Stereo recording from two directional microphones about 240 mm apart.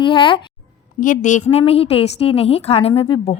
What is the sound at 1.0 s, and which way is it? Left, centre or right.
A woman's voice, left.